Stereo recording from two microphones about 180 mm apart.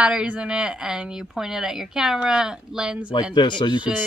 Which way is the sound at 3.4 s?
25° left (ahead or behind).